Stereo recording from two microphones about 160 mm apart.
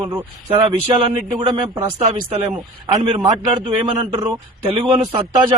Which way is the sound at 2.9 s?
30° right (ahead or behind).